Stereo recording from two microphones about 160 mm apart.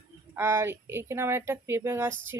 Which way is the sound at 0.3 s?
15° right (ahead or behind).